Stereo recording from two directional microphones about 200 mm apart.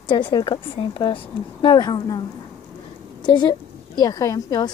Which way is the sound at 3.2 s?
20° left (ahead or behind).